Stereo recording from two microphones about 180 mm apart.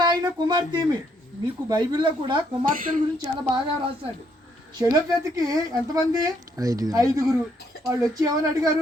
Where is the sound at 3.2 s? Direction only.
25° right (ahead or behind).